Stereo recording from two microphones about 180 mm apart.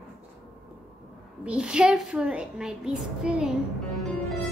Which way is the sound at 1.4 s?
5° right (ahead or behind).